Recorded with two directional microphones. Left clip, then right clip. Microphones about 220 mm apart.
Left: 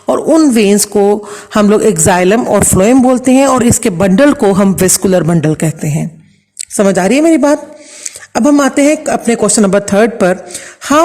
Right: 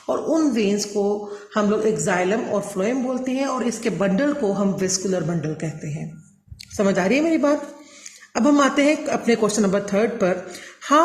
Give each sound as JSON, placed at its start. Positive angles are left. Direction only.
{"t": 0.0, "sound": "speech", "side_deg": 45}